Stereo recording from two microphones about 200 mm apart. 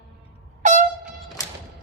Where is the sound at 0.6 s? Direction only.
35° right (ahead or behind).